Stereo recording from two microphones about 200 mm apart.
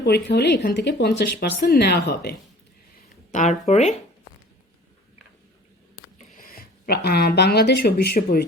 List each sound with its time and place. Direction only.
0.0 s speech: 55° left (ahead or behind)
3.3 s speech: 40° left (ahead or behind)
6.1 s speech: 45° left (ahead or behind)